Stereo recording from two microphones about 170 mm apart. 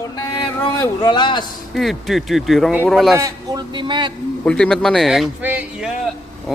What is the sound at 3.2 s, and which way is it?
Speech, 20° right (ahead or behind).